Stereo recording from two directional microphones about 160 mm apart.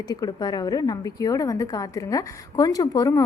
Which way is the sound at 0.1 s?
25° left (ahead or behind).